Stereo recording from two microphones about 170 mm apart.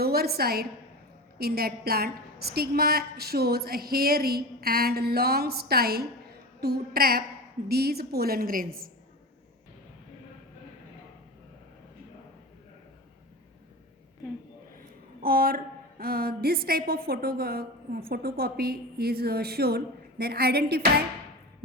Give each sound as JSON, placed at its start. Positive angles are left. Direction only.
{"t": 0.0, "sound": "a woman's voice", "side_deg": -65}
{"t": 15.2, "sound": "a woman's voice", "side_deg": -60}